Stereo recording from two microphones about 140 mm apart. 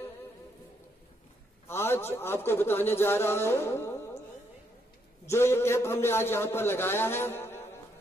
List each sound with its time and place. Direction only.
1.7 s a man's voice: 15° left (ahead or behind)
5.3 s a man's voice: 20° left (ahead or behind)